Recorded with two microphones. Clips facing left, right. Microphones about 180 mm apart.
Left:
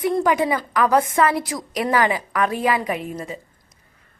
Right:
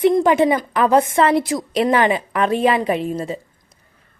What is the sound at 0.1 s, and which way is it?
A woman's voice, 25° right (ahead or behind).